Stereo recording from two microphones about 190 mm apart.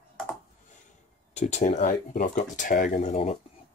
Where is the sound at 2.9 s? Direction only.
30° left (ahead or behind).